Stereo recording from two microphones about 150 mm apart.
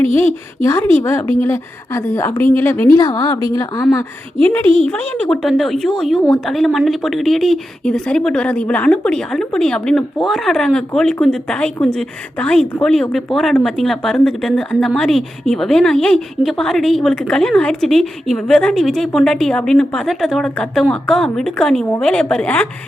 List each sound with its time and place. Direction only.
0.6 s a woman's voice: 15° left (ahead or behind)
4.6 s a woman's voice: 40° right (ahead or behind)
4.9 s speech: 10° left (ahead or behind)